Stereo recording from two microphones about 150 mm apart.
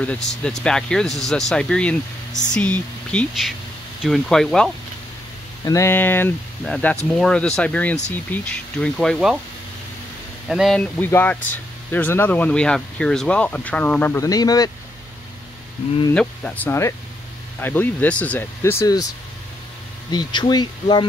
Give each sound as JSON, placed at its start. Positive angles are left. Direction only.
{"t": 0.3, "sound": "speech", "side_deg": 5}
{"t": 5.7, "sound": "speech", "side_deg": 15}
{"t": 10.5, "sound": "speech", "side_deg": 0}
{"t": 16.2, "sound": "speech", "side_deg": 5}
{"t": 20.1, "sound": "speech", "side_deg": 30}